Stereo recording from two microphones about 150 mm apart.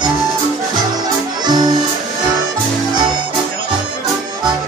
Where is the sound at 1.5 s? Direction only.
30° right (ahead or behind).